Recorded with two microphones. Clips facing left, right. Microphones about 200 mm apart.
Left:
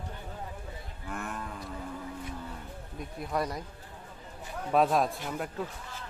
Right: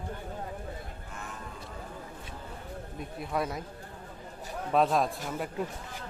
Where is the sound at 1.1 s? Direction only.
60° left (ahead or behind).